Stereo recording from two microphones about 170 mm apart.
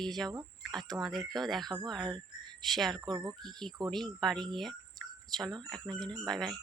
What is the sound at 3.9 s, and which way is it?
Speech, centre (ahead or behind).